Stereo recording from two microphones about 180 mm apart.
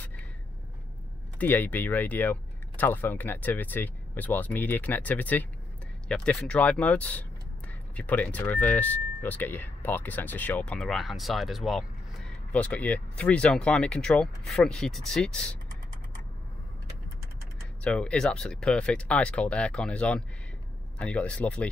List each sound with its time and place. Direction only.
1.4 s speech: 10° left (ahead or behind)
17.8 s speech: 5° left (ahead or behind)